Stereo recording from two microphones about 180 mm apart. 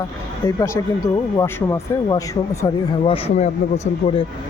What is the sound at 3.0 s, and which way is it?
Speech, 30° left (ahead or behind).